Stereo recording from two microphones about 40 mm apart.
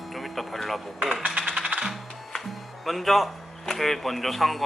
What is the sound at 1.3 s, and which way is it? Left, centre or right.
Music, centre.